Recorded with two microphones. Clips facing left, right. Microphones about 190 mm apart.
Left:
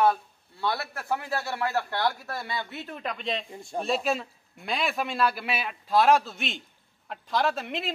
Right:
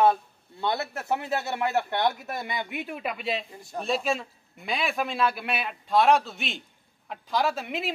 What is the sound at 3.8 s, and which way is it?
Speech, centre (ahead or behind).